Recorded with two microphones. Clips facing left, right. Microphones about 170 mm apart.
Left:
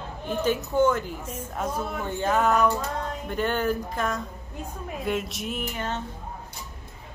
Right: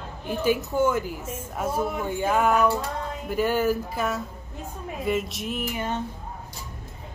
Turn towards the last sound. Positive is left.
turn(degrees=-10)  # may be behind; listen again after turning